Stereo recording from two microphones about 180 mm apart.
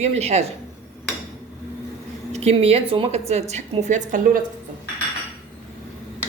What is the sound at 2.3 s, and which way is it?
A woman's voice, 35° right (ahead or behind).